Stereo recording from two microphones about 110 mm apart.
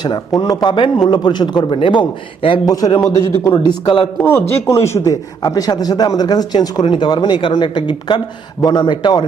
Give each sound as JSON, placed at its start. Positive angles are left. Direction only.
{"t": 0.0, "sound": "a man's voice", "side_deg": 40}
{"t": 2.6, "sound": "speech", "side_deg": 35}
{"t": 3.6, "sound": "a man's voice", "side_deg": 45}
{"t": 4.2, "sound": "speech", "side_deg": 20}